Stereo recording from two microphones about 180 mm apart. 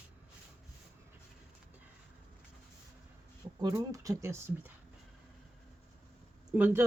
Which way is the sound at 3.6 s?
20° right (ahead or behind).